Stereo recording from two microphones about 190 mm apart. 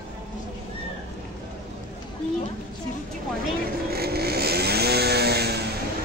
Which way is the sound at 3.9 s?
55° right (ahead or behind).